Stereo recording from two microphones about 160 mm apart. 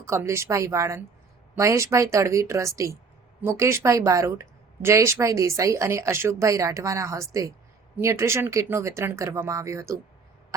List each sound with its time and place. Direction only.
0.0 s speech: 15° right (ahead or behind)